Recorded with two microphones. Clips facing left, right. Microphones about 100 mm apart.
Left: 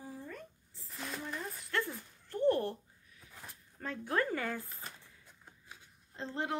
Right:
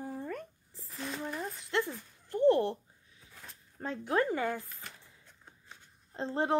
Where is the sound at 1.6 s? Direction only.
20° right (ahead or behind).